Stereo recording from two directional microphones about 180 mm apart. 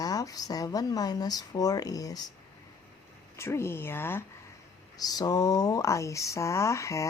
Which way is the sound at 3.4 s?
15° left (ahead or behind).